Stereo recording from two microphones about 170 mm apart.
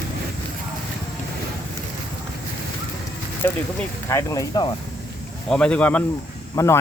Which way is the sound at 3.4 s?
15° left (ahead or behind).